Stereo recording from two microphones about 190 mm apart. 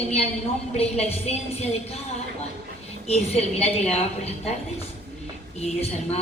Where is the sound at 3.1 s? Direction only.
35° left (ahead or behind).